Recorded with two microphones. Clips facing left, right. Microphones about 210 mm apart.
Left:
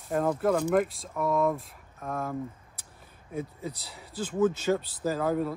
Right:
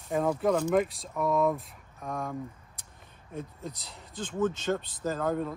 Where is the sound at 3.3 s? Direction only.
10° left (ahead or behind).